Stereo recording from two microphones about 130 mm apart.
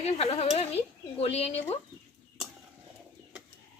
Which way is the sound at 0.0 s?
50° left (ahead or behind).